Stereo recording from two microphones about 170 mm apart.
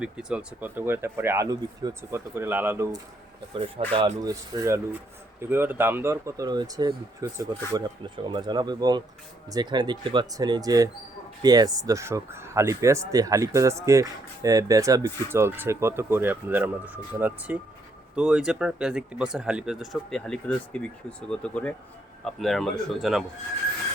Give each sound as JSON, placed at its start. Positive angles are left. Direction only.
{"t": 0.0, "sound": "speech", "side_deg": -5}
{"t": 3.5, "sound": "speech", "side_deg": -30}